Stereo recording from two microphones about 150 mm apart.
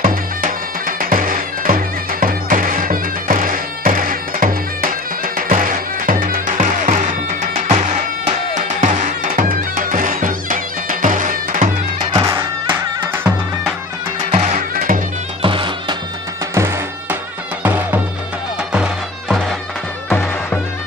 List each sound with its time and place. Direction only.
0.0 s music: 70° right (ahead or behind)
12.1 s music: 25° right (ahead or behind)
14.3 s music: 50° right (ahead or behind); by 15.0 s 70° right (ahead or behind)
15.4 s music: 35° right (ahead or behind)
16.5 s music: 15° right (ahead or behind)
20.1 s music: 10° left (ahead or behind)